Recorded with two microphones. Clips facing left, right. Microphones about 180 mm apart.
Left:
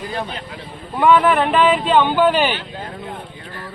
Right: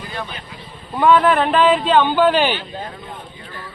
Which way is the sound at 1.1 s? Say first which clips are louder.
Even; 5° left (ahead or behind).